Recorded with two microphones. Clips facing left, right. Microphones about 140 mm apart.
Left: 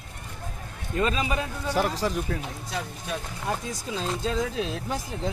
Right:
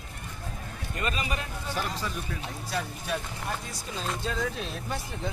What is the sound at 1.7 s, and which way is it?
Speech, 90° left.